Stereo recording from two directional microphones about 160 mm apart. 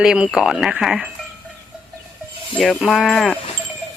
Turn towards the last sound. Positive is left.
turn(degrees=0)  # may be behind; listen again after turning